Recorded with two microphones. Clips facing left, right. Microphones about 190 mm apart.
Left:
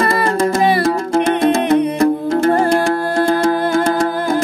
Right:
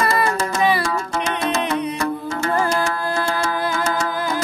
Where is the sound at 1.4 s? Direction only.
55° left (ahead or behind).